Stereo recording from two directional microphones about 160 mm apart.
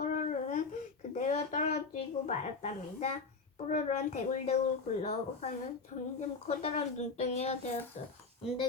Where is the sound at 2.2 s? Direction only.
45° left (ahead or behind).